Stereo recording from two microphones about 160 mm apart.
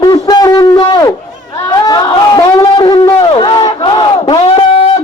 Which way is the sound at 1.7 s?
25° left (ahead or behind).